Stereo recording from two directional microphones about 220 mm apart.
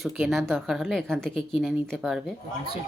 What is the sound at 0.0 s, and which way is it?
A woman's voice, centre (ahead or behind).